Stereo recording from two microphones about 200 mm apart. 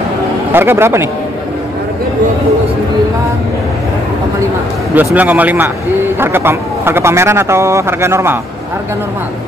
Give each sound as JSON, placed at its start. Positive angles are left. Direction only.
{"t": 0.5, "sound": "speech", "side_deg": -10}
{"t": 4.9, "sound": "speech", "side_deg": -10}